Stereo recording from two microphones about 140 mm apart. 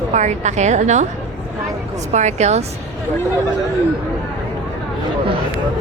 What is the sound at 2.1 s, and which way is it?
Speech, 55° right (ahead or behind).